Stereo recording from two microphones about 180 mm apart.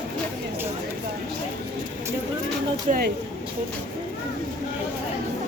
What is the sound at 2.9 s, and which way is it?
Speech, 40° right (ahead or behind).